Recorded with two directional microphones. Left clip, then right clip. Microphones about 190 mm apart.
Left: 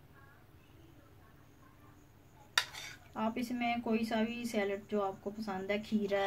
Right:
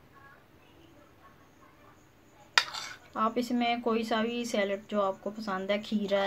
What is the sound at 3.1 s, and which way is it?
Speech, 30° right (ahead or behind).